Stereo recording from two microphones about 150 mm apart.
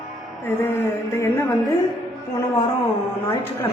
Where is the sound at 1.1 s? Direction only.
20° left (ahead or behind).